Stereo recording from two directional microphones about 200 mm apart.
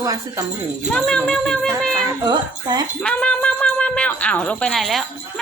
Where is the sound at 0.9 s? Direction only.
5° left (ahead or behind).